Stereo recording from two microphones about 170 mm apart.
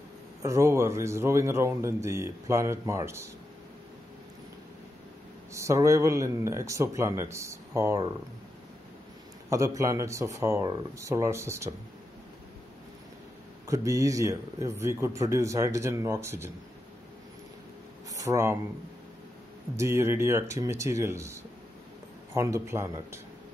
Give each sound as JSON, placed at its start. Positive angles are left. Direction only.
{"t": 0.4, "sound": "speech", "side_deg": -15}
{"t": 5.5, "sound": "speech", "side_deg": -15}
{"t": 9.5, "sound": "speech", "side_deg": -20}
{"t": 13.7, "sound": "speech", "side_deg": -20}
{"t": 18.1, "sound": "speech", "side_deg": -20}
{"t": 19.8, "sound": "speech", "side_deg": -15}